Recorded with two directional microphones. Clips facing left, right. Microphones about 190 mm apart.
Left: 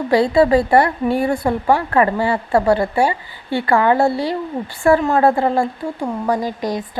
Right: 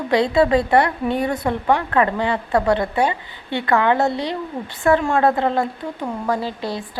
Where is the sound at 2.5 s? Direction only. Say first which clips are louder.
Left 3 dB; 25° left (ahead or behind).